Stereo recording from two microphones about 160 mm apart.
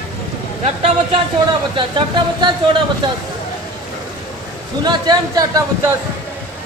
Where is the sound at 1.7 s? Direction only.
30° right (ahead or behind).